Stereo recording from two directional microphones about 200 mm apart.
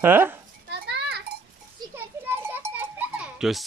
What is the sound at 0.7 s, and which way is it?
Children playing, 55° right (ahead or behind).